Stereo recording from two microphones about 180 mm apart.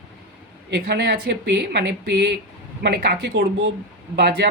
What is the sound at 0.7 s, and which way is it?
A woman's voice, 65° right (ahead or behind).